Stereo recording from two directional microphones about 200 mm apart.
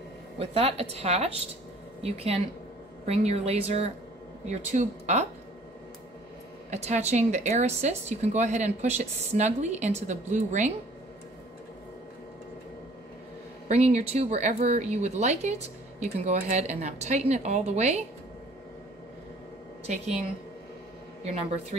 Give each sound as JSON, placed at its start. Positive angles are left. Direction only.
{"t": 0.4, "sound": "a woman's voice", "side_deg": -30}
{"t": 6.7, "sound": "a woman's voice", "side_deg": -35}
{"t": 13.7, "sound": "a woman's voice", "side_deg": -35}